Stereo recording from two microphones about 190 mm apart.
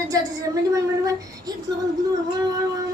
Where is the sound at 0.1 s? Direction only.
15° right (ahead or behind).